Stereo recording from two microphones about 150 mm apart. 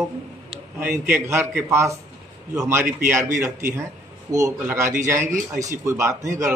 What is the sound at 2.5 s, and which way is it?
A man's voice, 20° right (ahead or behind).